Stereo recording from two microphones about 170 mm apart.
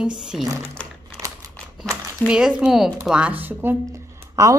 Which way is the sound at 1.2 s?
20° right (ahead or behind).